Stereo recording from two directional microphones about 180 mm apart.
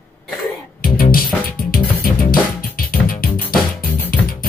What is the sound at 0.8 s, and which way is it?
Music, 55° left (ahead or behind).